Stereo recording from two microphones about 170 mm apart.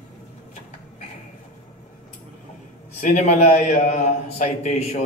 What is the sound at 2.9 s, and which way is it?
A man's voice, 45° left (ahead or behind).